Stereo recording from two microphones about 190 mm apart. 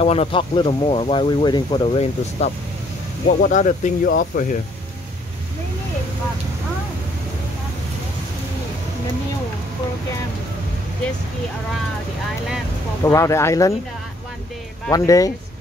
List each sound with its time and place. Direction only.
0.0 s speech: 30° left (ahead or behind)
3.3 s speech: 45° left (ahead or behind)
13.0 s speech: 15° left (ahead or behind)
14.9 s speech: 15° left (ahead or behind)